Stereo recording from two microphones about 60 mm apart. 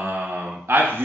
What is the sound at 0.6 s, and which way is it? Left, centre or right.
Speech, right.